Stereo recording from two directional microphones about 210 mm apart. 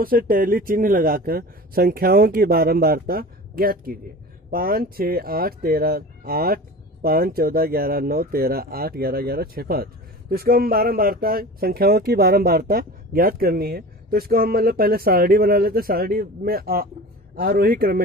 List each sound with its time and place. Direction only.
0.0 s speech: 45° right (ahead or behind)